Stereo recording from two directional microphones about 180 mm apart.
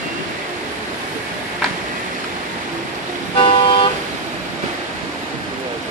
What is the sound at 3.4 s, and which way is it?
Vehicle, 30° left (ahead or behind).